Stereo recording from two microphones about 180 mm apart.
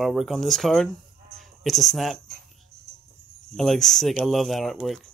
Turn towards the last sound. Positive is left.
turn(degrees=0)  # may be behind; listen again after turning